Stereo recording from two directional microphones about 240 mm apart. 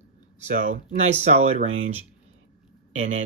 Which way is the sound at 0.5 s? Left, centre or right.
Right.